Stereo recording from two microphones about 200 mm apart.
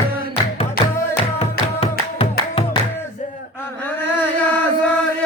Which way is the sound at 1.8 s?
30° left (ahead or behind).